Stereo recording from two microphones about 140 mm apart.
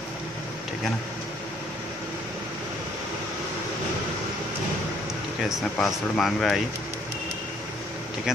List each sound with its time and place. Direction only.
5.8 s speech: centre (ahead or behind)